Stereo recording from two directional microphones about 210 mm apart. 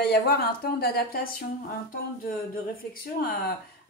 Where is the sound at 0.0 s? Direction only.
45° left (ahead or behind).